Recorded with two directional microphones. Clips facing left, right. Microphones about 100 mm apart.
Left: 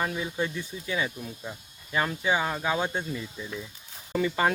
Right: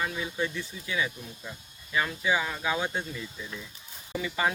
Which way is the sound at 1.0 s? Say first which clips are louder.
Right 2 dB; 30° left (ahead or behind).